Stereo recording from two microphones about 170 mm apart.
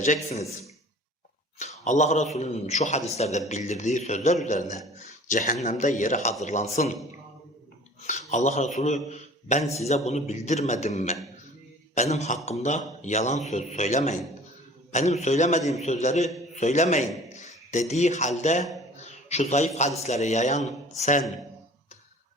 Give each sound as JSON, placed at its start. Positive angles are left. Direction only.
{"t": 0.0, "sound": "a man's voice", "side_deg": 45}
{"t": 1.5, "sound": "a man's voice", "side_deg": 45}
{"t": 8.0, "sound": "a man's voice", "side_deg": 45}
{"t": 18.9, "sound": "a sound", "side_deg": 40}
{"t": 20.0, "sound": "a man's voice", "side_deg": 40}